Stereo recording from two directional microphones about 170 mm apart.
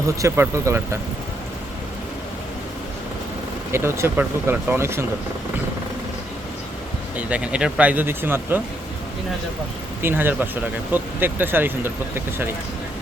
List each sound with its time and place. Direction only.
0.2 s speech: 15° right (ahead or behind)
3.7 s speech: 15° right (ahead or behind)
7.2 s speech: 10° right (ahead or behind)
10.0 s speech: 10° right (ahead or behind)